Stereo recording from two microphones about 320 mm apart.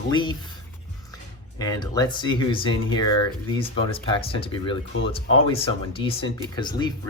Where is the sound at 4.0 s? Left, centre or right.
Centre.